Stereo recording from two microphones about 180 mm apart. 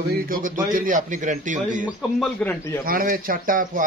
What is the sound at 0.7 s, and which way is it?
A man's voice, 45° right (ahead or behind).